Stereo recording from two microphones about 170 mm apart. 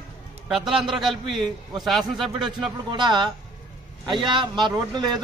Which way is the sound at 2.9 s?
25° right (ahead or behind).